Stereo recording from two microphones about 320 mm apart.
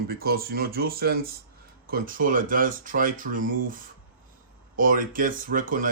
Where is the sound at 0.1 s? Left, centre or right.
Right.